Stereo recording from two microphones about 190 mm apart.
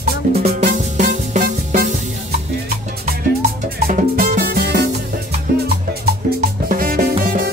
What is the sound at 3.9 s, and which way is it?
Music, 50° right (ahead or behind).